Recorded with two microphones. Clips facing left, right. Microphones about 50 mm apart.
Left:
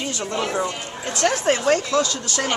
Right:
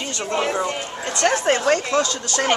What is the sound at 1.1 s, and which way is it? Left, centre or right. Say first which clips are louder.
Speech: right 1 dB; centre.